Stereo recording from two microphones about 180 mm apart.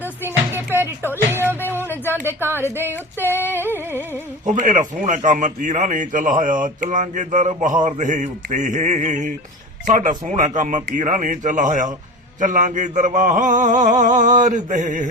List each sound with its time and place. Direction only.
0.5 s music: 10° right (ahead or behind)
1.8 s a sound: 10° left (ahead or behind)
2.2 s speech: 15° right (ahead or behind)
2.9 s female singing: 10° left (ahead or behind)
4.4 s speech: 45° right (ahead or behind)